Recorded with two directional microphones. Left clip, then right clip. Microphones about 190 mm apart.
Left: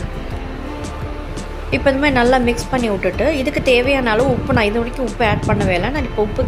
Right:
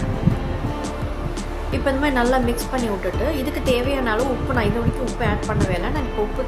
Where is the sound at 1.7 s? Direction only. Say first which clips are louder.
Left 6 dB; 15° left (ahead or behind).